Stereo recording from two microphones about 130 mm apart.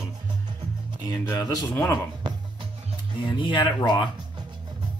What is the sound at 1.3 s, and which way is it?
Speech, 25° left (ahead or behind).